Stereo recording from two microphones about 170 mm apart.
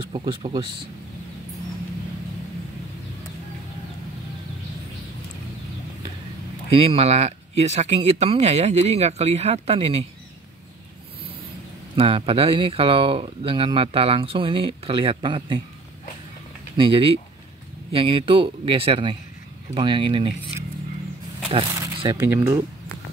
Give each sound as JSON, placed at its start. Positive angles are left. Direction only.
{"t": 0.1, "sound": "speech", "side_deg": -30}
{"t": 6.7, "sound": "speech", "side_deg": -35}
{"t": 12.0, "sound": "speech", "side_deg": -35}
{"t": 16.7, "sound": "speech", "side_deg": -35}
{"t": 21.5, "sound": "speech", "side_deg": -30}
{"t": 22.2, "sound": "speech", "side_deg": -15}